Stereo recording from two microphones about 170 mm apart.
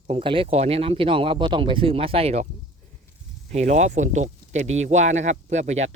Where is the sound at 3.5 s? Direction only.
45° right (ahead or behind).